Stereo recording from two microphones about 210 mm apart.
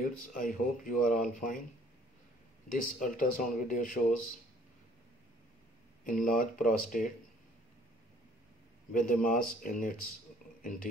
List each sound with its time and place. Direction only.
0.0 s speech: 40° left (ahead or behind)
2.7 s speech: 40° left (ahead or behind)
6.0 s speech: 40° left (ahead or behind)
8.9 s speech: 40° left (ahead or behind)